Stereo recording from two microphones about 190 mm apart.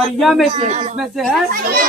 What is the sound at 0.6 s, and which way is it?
Speech, 40° right (ahead or behind).